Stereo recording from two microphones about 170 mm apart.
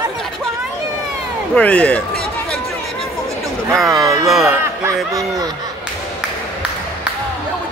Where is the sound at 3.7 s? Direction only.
Centre (ahead or behind).